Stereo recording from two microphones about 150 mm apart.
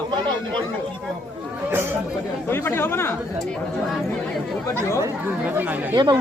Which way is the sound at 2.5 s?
15° left (ahead or behind).